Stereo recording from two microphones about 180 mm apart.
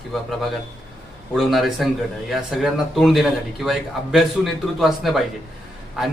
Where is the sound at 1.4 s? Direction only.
Centre (ahead or behind).